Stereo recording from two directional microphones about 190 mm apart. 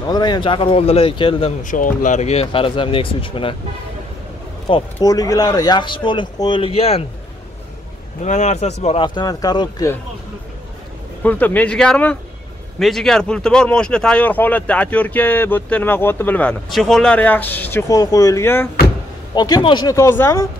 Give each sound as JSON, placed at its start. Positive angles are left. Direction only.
{"t": 0.1, "sound": "speech", "side_deg": 20}
{"t": 1.6, "sound": "speech", "side_deg": 45}
{"t": 4.9, "sound": "speech", "side_deg": 20}
{"t": 8.2, "sound": "speech", "side_deg": 40}
{"t": 11.2, "sound": "speech", "side_deg": 10}